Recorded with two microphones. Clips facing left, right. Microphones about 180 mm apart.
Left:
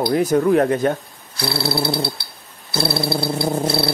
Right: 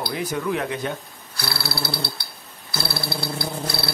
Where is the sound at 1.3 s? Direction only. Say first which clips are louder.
Left 8 dB; 25° left (ahead or behind).